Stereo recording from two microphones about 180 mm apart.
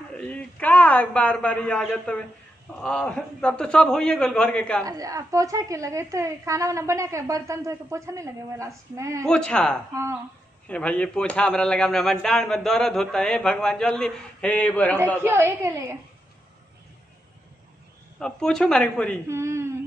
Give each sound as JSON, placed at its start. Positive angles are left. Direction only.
{"t": 0.1, "sound": "a man's voice", "side_deg": 5}
{"t": 4.8, "sound": "a woman's voice", "side_deg": -20}
{"t": 9.2, "sound": "a man's voice", "side_deg": 5}
{"t": 15.2, "sound": "a woman's voice", "side_deg": -15}
{"t": 18.2, "sound": "a man's voice", "side_deg": 5}
{"t": 19.2, "sound": "speech", "side_deg": -15}